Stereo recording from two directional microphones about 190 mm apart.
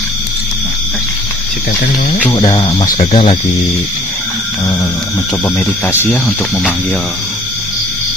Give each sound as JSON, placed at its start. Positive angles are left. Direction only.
{"t": 2.3, "sound": "speech", "side_deg": 25}
{"t": 5.5, "sound": "speech", "side_deg": 10}
{"t": 6.1, "sound": "speech", "side_deg": 0}